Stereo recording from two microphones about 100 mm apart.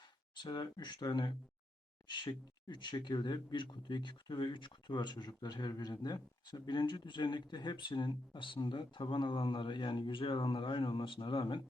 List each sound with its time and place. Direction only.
0.3 s speech: 45° left (ahead or behind)